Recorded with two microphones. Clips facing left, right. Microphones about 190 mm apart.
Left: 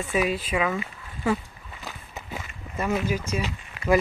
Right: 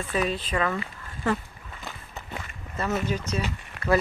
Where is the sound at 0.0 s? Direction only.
10° left (ahead or behind).